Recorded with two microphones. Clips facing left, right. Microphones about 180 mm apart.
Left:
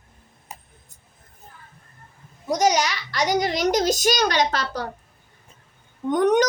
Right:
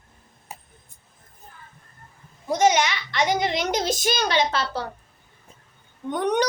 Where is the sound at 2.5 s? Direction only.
40° left (ahead or behind).